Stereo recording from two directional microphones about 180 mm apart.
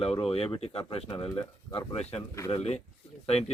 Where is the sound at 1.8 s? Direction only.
35° left (ahead or behind).